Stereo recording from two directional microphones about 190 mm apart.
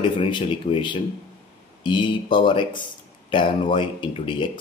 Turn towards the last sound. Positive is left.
turn(degrees=25)  # may be behind; listen again after turning